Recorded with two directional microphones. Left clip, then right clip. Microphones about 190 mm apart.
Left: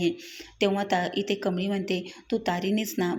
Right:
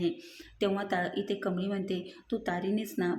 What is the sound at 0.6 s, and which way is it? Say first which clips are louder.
A woman's voice: left 5 dB; 15° left (ahead or behind).